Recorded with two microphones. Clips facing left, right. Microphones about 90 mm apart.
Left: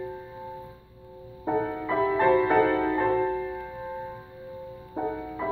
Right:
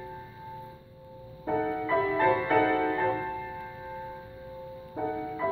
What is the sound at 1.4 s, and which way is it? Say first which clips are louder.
Music: left 1 dB; 10° left (ahead or behind).